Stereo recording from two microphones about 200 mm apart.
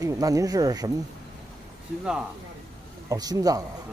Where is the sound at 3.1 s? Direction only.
15° right (ahead or behind).